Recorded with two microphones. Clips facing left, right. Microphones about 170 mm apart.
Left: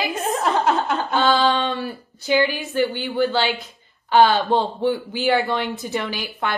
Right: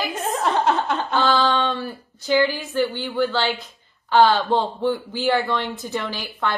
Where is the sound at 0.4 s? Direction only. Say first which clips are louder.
Even; 5° left (ahead or behind).